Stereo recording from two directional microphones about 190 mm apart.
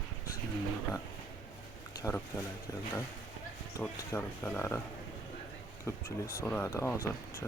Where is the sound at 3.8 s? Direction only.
10° left (ahead or behind).